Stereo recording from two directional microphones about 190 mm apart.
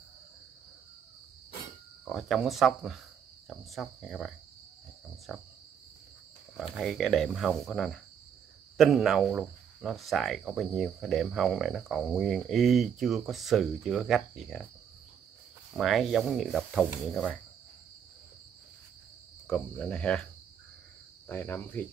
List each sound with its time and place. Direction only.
2.0 s speech: centre (ahead or behind)
6.5 s speech: centre (ahead or behind)
15.7 s speech: centre (ahead or behind)
19.4 s speech: 5° left (ahead or behind)
21.3 s cricket: 10° left (ahead or behind)